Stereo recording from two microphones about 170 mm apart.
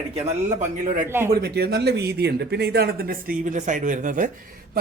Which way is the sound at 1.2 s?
65° right (ahead or behind).